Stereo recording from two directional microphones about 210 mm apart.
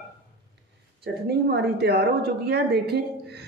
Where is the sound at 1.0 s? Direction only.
50° right (ahead or behind).